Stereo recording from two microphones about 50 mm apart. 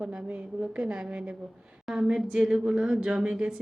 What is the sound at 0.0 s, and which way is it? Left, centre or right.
Speech, right.